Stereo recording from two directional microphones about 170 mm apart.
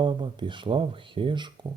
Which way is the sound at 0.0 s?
30° right (ahead or behind).